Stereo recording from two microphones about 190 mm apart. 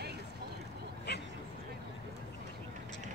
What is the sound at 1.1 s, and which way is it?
Vehicle, 60° left (ahead or behind).